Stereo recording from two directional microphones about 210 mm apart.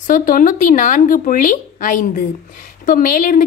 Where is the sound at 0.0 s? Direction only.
40° left (ahead or behind).